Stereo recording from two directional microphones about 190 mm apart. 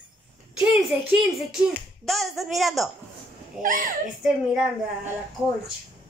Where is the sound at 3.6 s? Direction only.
45° right (ahead or behind).